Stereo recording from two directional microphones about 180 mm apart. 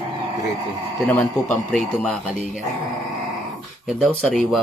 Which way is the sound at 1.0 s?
15° left (ahead or behind).